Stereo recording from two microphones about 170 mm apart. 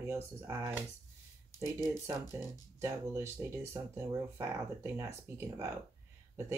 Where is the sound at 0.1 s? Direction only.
15° right (ahead or behind).